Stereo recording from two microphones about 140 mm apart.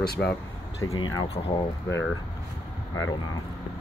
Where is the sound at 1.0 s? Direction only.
35° left (ahead or behind).